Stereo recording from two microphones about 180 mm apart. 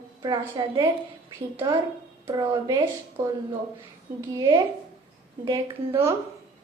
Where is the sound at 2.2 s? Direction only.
20° right (ahead or behind).